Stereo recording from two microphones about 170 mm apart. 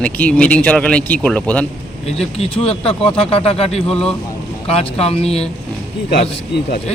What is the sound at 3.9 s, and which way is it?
Speech, 5° left (ahead or behind).